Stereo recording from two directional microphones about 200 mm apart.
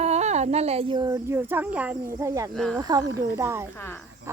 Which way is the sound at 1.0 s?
10° right (ahead or behind).